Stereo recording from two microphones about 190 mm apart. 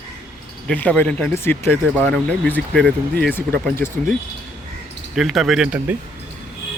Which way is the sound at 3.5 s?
55° right (ahead or behind).